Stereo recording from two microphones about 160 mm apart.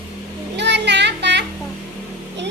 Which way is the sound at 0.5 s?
90° right.